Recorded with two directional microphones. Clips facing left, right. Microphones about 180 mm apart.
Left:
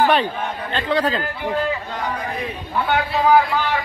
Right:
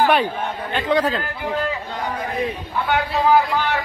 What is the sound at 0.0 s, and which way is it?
Speech, 10° right (ahead or behind).